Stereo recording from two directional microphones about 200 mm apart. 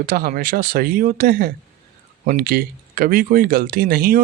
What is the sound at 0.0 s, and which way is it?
Speech, 45° right (ahead or behind).